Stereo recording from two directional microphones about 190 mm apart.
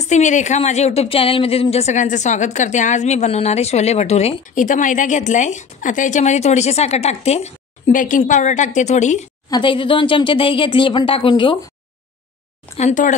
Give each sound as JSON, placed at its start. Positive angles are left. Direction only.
{"t": 0.0, "sound": "speech", "side_deg": 40}
{"t": 9.5, "sound": "speech", "side_deg": 25}
{"t": 12.7, "sound": "speech", "side_deg": 40}